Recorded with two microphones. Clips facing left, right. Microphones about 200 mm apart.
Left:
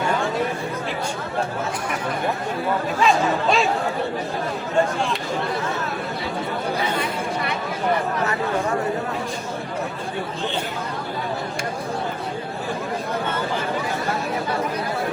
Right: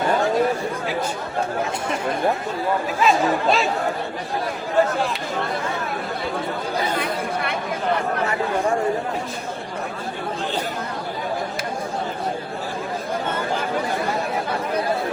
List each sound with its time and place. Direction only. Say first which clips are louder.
3.0 s speech: right 1 dB; centre (ahead or behind)
7.0 s chatter: even; 55° right (ahead or behind)